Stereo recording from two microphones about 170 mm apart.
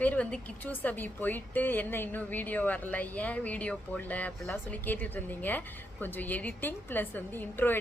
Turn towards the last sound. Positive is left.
turn(degrees=10)  # may be behind; listen again after turning